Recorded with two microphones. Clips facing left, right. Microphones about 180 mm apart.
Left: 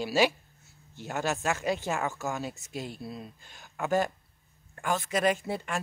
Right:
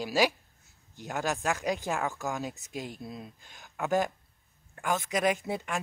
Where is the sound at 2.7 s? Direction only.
15° right (ahead or behind).